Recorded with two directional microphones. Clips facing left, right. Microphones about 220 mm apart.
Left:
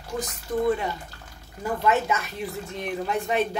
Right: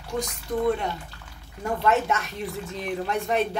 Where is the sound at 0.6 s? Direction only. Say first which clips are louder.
Even; 5° left (ahead or behind).